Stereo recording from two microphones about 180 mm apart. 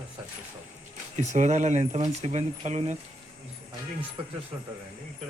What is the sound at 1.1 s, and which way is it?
Speech, 40° right (ahead or behind).